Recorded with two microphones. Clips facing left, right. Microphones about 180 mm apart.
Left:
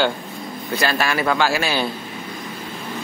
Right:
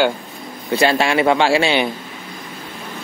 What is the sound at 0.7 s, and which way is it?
A man's voice, 25° right (ahead or behind).